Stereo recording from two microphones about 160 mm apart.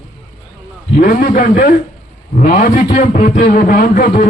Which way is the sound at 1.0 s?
60° left (ahead or behind).